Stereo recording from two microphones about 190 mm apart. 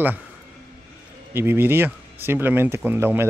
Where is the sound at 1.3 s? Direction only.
10° right (ahead or behind).